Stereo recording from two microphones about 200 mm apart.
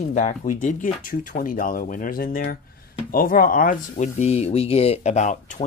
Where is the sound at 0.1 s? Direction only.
35° left (ahead or behind).